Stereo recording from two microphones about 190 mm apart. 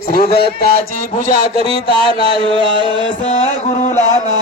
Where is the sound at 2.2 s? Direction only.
30° right (ahead or behind).